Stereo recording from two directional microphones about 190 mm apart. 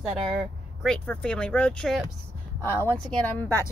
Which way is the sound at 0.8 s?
5° left (ahead or behind).